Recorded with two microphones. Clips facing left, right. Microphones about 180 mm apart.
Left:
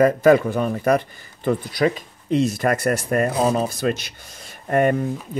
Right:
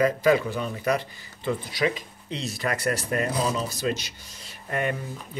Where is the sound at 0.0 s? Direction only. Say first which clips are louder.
Left 6 dB; 50° left (ahead or behind).